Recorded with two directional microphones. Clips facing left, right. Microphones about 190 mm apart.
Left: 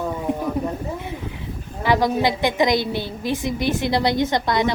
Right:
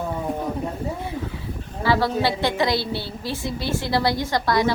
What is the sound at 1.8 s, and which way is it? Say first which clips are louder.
A woman's voice: left 2 dB; 15° left (ahead or behind).